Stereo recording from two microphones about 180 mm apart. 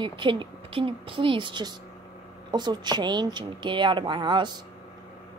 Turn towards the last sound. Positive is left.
turn(degrees=-25)  # may be behind; listen again after turning